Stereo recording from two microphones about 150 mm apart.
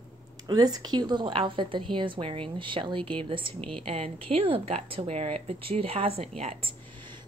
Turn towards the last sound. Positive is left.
turn(degrees=-40)  # may be behind; listen again after turning